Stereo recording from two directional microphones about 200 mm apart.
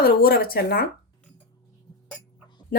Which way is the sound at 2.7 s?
45° left (ahead or behind).